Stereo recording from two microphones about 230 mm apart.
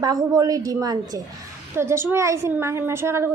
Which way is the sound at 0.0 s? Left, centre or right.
Centre.